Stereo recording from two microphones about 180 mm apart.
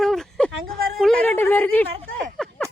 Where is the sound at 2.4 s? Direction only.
Centre (ahead or behind).